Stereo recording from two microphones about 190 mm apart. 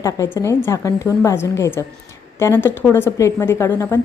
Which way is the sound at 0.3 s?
15° left (ahead or behind).